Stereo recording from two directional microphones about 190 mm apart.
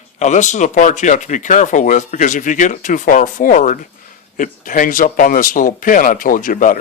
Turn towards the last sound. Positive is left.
turn(degrees=45)  # may be behind; listen again after turning